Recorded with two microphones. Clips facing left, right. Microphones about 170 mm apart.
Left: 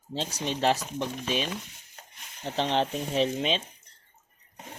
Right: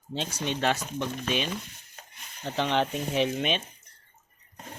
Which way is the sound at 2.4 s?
25° left (ahead or behind).